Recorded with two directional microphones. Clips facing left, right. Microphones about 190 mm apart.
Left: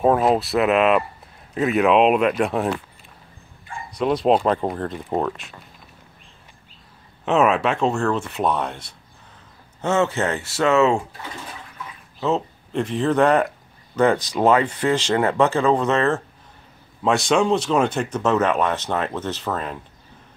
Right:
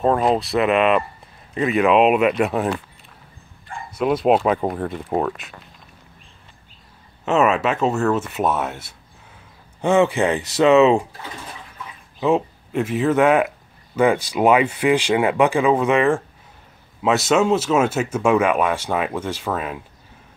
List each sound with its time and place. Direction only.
0.0 s speech: 5° left (ahead or behind)
3.9 s speech: 5° right (ahead or behind)
7.2 s speech: centre (ahead or behind); by 11.1 s 15° right (ahead or behind)
12.2 s speech: 10° right (ahead or behind)